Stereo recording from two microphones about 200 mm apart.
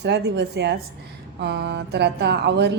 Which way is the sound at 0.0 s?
55° right (ahead or behind).